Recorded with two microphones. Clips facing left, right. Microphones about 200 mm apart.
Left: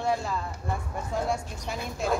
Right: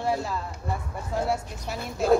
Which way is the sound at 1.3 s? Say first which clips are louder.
Right 2 dB; 5° right (ahead or behind).